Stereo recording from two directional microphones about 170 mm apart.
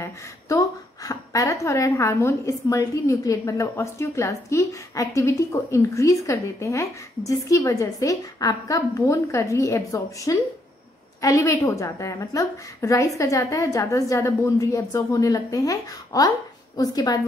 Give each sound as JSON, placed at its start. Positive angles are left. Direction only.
{"t": 0.0, "sound": "a woman's voice", "side_deg": 20}